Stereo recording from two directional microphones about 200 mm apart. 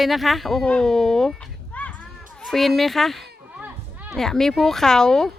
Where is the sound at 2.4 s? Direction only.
Centre (ahead or behind).